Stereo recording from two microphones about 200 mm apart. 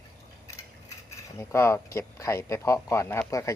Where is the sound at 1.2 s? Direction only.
15° left (ahead or behind).